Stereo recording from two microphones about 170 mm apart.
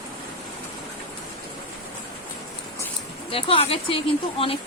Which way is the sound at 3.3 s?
35° left (ahead or behind).